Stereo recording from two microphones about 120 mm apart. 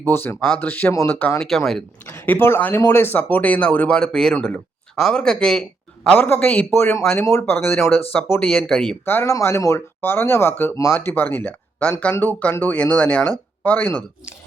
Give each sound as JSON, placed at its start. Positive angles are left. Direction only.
{"t": 0.1, "sound": "speech", "side_deg": 15}
{"t": 1.4, "sound": "speech", "side_deg": 0}
{"t": 2.0, "sound": "speech", "side_deg": 20}
{"t": 6.1, "sound": "speech", "side_deg": 15}
{"t": 9.0, "sound": "speech", "side_deg": 20}